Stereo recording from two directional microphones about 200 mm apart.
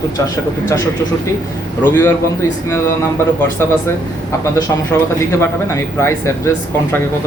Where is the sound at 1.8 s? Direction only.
10° left (ahead or behind).